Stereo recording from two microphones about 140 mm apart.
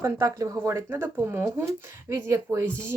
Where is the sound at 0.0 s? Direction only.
25° right (ahead or behind).